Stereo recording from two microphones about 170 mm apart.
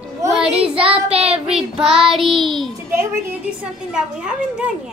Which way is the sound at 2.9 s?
15° right (ahead or behind).